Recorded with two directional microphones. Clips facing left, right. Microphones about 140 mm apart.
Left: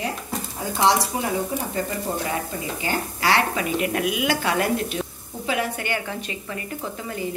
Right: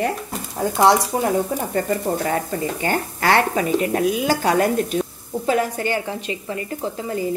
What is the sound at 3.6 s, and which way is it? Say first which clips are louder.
A woman's voice: right 4 dB; 35° right (ahead or behind).